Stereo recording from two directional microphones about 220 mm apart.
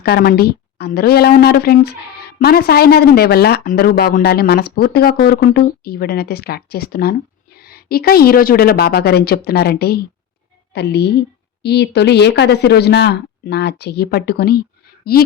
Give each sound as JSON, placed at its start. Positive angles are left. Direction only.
{"t": 0.0, "sound": "a woman's voice", "side_deg": 45}